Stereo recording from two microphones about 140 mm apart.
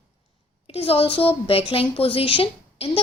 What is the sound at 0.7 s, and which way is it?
A woman's voice, 45° left (ahead or behind).